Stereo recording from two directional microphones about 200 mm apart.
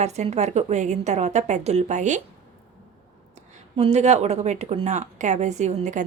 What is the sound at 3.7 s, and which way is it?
A woman's voice, 35° right (ahead or behind).